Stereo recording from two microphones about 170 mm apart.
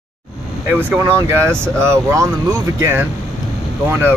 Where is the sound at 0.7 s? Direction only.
10° right (ahead or behind).